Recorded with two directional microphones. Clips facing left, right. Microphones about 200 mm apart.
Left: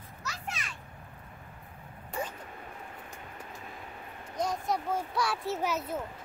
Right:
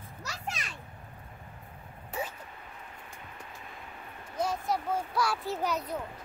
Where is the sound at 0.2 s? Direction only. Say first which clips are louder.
Right 1 dB; 35° right (ahead or behind).